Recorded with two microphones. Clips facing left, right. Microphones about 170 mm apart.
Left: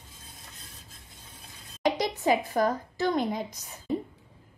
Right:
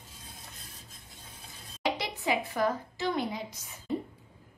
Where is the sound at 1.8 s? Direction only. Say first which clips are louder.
Left 6 dB; 40° left (ahead or behind).